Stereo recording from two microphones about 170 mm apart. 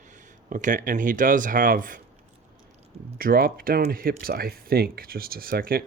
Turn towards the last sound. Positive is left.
turn(degrees=-60)  # may be behind; listen again after turning